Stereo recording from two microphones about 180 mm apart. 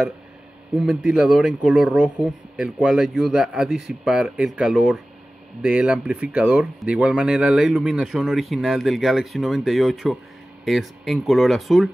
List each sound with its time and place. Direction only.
0.7 s speech: 5° right (ahead or behind)